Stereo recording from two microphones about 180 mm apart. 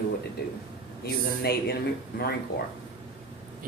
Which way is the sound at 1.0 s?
60° left (ahead or behind).